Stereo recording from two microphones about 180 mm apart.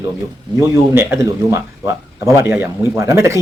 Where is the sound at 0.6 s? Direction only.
10° right (ahead or behind).